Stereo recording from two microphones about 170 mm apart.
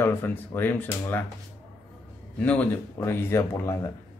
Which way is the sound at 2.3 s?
10° left (ahead or behind).